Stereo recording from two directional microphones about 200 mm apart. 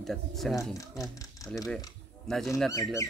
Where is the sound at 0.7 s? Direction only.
15° left (ahead or behind).